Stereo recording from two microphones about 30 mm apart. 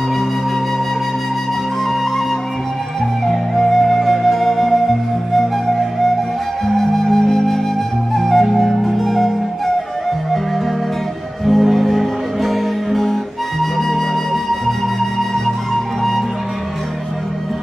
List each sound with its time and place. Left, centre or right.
3.3 s flute: centre
6.6 s flute: centre
11.4 s music: centre
15.0 s flute: centre